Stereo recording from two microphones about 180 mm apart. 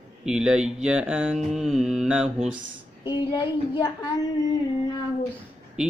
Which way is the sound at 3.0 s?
25° left (ahead or behind).